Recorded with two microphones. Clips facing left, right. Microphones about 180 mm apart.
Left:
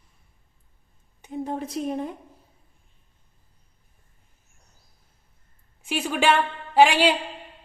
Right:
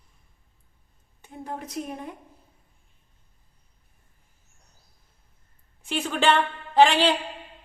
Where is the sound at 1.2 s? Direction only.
20° left (ahead or behind).